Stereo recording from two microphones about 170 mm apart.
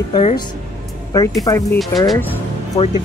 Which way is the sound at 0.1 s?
40° left (ahead or behind).